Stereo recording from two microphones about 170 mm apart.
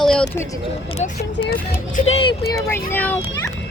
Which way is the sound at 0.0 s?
5° left (ahead or behind).